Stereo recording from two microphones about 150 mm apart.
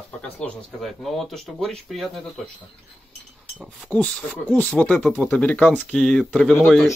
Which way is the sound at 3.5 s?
10° right (ahead or behind).